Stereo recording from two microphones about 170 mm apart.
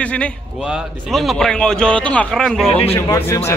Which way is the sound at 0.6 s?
5° right (ahead or behind).